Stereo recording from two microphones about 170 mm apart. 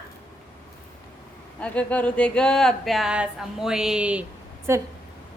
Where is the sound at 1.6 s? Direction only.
5° left (ahead or behind).